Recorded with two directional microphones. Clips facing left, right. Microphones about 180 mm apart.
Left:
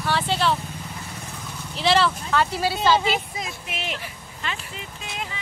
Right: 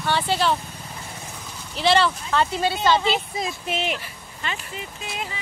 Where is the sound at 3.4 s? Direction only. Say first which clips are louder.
Right 6 dB; 30° right (ahead or behind).